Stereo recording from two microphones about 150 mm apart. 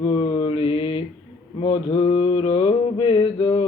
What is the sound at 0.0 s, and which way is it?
Mantra, 40° left (ahead or behind).